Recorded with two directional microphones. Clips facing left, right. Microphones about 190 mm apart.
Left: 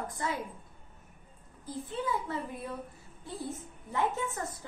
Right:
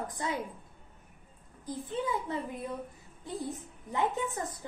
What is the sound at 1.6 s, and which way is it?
A woman's voice, 15° right (ahead or behind).